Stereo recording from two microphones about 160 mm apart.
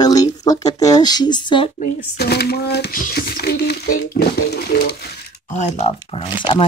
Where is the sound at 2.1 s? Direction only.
90° left.